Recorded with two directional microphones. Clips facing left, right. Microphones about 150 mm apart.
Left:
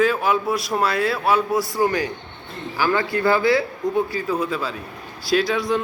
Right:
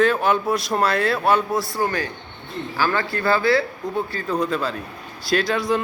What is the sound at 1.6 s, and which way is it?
A man's voice, 15° left (ahead or behind).